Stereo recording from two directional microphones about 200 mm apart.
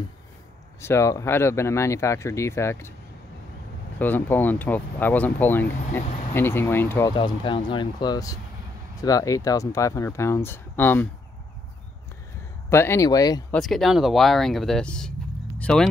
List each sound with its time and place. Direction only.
0.7 s speech: 15° left (ahead or behind)
4.0 s speech: 10° left (ahead or behind)
7.2 s speech: 25° left (ahead or behind)
12.6 s speech: 15° left (ahead or behind)
13.5 s speech: centre (ahead or behind)